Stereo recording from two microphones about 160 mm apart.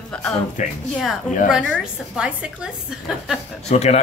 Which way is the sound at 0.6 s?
50° left (ahead or behind).